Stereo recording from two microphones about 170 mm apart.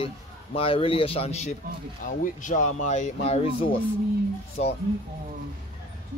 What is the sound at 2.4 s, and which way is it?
Speech, 45° left (ahead or behind).